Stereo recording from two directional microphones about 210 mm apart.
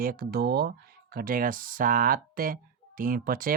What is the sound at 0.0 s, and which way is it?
Speech, 45° right (ahead or behind).